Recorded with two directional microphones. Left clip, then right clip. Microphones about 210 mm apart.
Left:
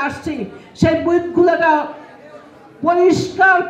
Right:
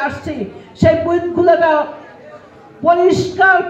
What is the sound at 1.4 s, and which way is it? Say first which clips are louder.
Speech: right 3 dB; 35° left (ahead or behind).